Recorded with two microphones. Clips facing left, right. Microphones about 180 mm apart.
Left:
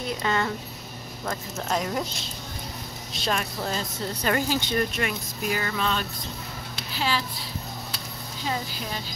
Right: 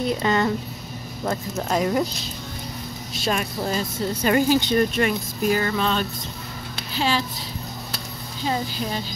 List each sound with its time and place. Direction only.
0.2 s speech: 35° right (ahead or behind)
1.7 s speech: centre (ahead or behind)
3.2 s speech: 10° right (ahead or behind)
4.9 s a woman's voice: 35° right (ahead or behind)